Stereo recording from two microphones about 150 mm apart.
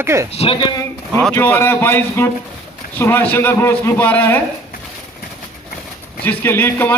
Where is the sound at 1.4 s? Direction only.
15° left (ahead or behind).